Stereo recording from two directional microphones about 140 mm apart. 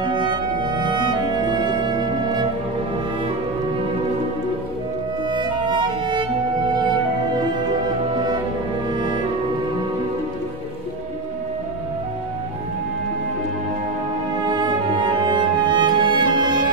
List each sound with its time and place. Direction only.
0.0 s music: 30° right (ahead or behind)
5.3 s music: 35° right (ahead or behind)
14.4 s music: 30° right (ahead or behind)